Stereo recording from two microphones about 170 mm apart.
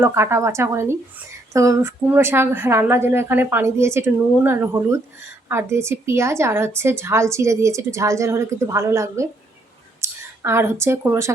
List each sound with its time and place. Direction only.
0.0 s a woman's voice: 15° right (ahead or behind)